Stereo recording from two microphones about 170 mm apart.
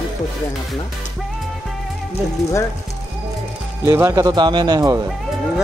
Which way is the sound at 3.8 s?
15° right (ahead or behind).